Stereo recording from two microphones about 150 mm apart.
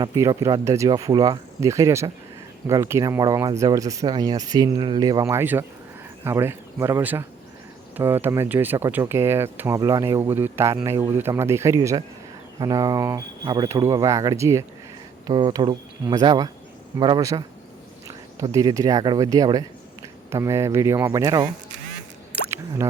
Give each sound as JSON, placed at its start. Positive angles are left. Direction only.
{"t": 0.0, "sound": "speech", "side_deg": -25}
{"t": 5.3, "sound": "speech", "side_deg": -15}
{"t": 15.3, "sound": "speech", "side_deg": -30}
{"t": 22.4, "sound": "drip", "side_deg": -15}